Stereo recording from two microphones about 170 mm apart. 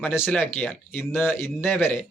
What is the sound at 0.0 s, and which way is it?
Speech, 10° left (ahead or behind).